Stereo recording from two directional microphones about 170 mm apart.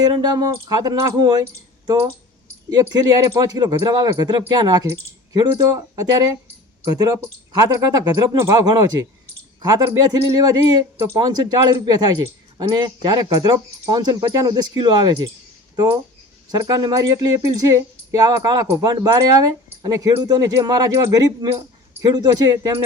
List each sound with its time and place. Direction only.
0.0 s speech: 25° right (ahead or behind)
7.6 s speech: 20° right (ahead or behind)